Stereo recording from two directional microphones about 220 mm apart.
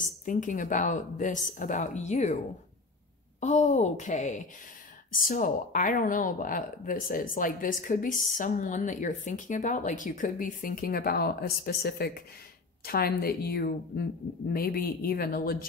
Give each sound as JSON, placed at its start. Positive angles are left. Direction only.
{"t": 0.2, "sound": "speech", "side_deg": 35}
{"t": 3.3, "sound": "a woman's voice", "side_deg": 30}